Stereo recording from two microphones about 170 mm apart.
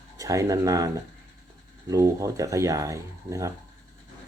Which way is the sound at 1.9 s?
20° right (ahead or behind).